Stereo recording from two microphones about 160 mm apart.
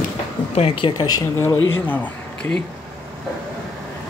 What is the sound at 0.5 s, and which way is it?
Speech, 40° left (ahead or behind).